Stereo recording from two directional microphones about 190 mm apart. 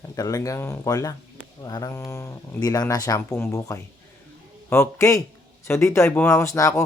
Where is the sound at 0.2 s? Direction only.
20° left (ahead or behind).